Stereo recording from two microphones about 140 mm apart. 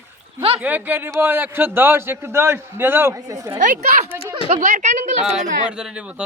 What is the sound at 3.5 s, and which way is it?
Speech, 65° right (ahead or behind).